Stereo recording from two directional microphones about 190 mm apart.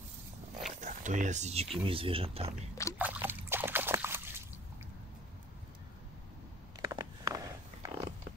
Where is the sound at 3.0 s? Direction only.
10° right (ahead or behind).